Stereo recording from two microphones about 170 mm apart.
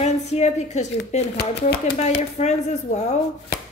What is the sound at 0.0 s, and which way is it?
A woman's voice, 40° left (ahead or behind).